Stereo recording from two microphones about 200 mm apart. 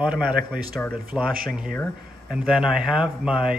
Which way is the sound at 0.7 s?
5° left (ahead or behind).